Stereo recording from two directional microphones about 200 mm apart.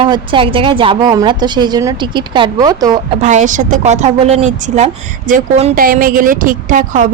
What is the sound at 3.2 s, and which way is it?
Speech, 40° right (ahead or behind).